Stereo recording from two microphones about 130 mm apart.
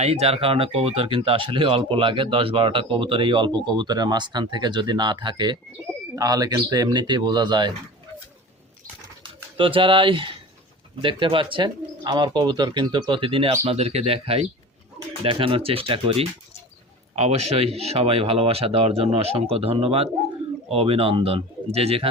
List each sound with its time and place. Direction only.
0.0 s speech: 55° right (ahead or behind); by 7.7 s 35° right (ahead or behind)
9.6 s speech: 40° right (ahead or behind)